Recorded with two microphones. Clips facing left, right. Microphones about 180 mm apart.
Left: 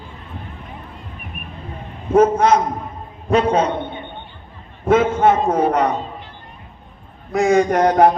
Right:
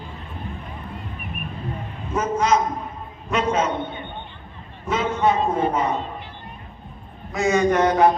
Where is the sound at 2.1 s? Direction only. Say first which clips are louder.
Left 8 dB; 60° left (ahead or behind).